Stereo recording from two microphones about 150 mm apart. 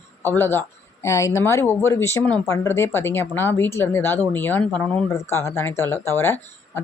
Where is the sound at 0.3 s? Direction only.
15° left (ahead or behind).